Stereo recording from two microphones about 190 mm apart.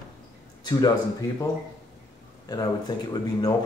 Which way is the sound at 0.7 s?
20° left (ahead or behind).